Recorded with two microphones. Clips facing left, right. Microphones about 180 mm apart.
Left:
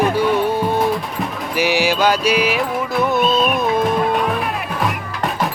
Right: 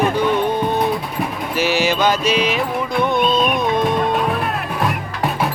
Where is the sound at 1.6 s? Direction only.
15° left (ahead or behind).